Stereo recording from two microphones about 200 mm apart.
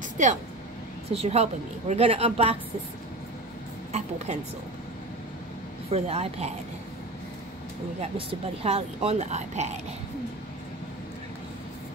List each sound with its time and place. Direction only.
0.2 s a woman's voice: 40° right (ahead or behind)
5.9 s speech: 30° right (ahead or behind)
8.0 s speech: 30° right (ahead or behind)